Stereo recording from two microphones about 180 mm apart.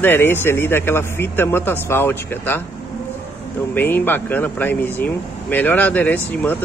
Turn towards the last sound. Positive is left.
turn(degrees=10)  # may be behind; listen again after turning